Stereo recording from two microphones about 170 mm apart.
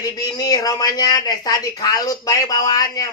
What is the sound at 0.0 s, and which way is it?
Speech, 20° left (ahead or behind).